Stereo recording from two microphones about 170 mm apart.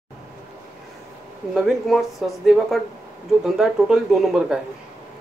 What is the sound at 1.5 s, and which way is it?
Speech, centre (ahead or behind).